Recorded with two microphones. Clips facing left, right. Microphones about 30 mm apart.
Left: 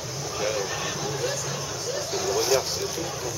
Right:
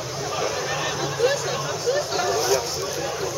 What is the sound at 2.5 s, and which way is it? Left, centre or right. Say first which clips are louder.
Vehicle: left 2 dB; centre.